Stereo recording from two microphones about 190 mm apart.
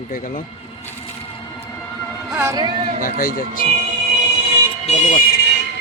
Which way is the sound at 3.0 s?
45° left (ahead or behind).